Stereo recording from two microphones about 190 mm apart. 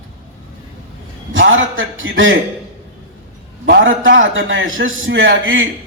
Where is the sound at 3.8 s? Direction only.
85° right.